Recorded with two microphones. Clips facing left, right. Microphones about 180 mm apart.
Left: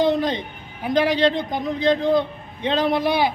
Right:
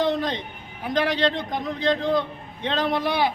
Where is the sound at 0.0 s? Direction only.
5° left (ahead or behind).